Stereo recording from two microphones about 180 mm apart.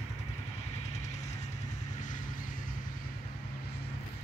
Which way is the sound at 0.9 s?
40° left (ahead or behind).